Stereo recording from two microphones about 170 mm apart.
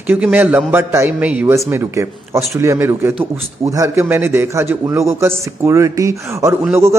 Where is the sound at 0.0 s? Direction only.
10° right (ahead or behind).